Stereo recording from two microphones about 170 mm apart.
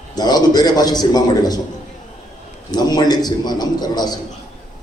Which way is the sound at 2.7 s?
25° left (ahead or behind).